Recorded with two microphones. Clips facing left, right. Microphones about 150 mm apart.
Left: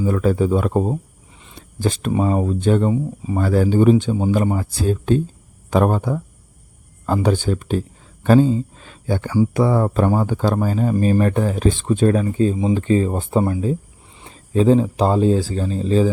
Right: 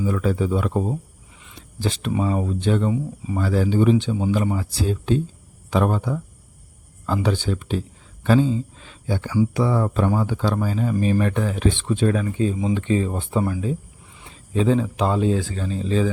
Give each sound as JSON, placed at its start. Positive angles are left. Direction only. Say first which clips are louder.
{"t": 0.0, "sound": "speech", "louder": "left 4 dB", "side_deg": 45}